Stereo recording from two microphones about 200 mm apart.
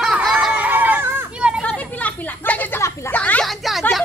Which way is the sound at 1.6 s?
5° left (ahead or behind).